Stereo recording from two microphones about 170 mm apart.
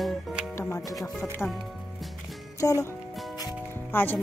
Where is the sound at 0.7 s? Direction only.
20° left (ahead or behind).